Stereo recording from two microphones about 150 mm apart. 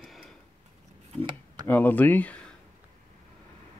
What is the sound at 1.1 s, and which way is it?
Speech, 30° right (ahead or behind).